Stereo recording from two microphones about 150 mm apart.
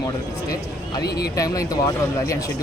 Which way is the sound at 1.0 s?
90° left.